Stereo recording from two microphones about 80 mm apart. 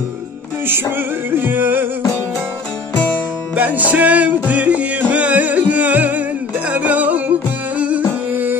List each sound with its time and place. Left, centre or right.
0.7 s music: right
3.5 s music: right